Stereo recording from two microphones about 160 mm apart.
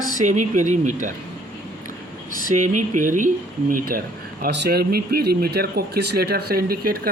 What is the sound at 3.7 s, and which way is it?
Speech, 65° right (ahead or behind).